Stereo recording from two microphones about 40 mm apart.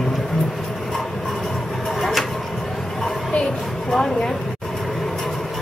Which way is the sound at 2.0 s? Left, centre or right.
Centre.